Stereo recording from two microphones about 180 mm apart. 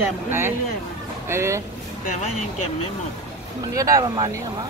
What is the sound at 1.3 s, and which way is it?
Speech, 15° right (ahead or behind).